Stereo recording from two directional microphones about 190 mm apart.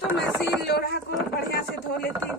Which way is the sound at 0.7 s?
60° left (ahead or behind).